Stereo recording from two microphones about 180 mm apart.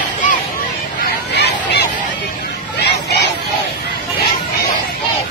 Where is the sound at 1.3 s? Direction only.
70° left (ahead or behind).